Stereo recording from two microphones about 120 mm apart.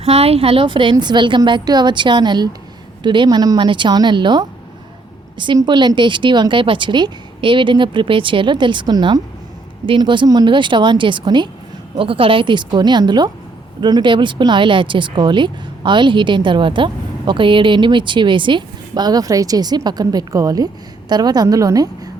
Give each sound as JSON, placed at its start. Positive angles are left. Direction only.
{"t": 0.0, "sound": "speech", "side_deg": -55}